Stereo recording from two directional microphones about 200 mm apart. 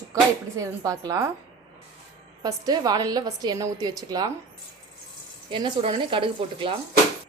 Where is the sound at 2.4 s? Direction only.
20° right (ahead or behind).